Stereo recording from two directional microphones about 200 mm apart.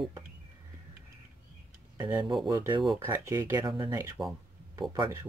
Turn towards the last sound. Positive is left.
turn(degrees=-20)  # may be behind; listen again after turning